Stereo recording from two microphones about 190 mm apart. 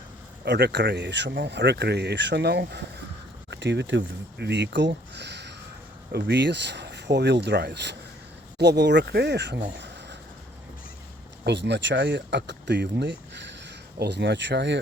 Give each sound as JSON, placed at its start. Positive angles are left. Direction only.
{"t": 0.4, "sound": "speech", "side_deg": -65}
{"t": 9.7, "sound": "a sound", "side_deg": -65}
{"t": 11.4, "sound": "speech", "side_deg": -65}